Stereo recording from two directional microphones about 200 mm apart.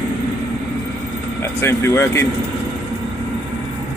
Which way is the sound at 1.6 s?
15° left (ahead or behind).